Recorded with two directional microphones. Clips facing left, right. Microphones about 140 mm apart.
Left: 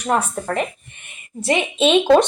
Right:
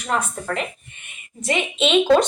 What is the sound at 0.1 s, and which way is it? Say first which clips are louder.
Speech: left 4 dB; 40° left (ahead or behind).